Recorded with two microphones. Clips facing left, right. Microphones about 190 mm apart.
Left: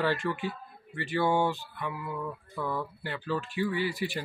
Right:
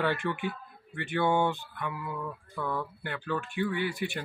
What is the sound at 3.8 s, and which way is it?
Speech, 55° right (ahead or behind).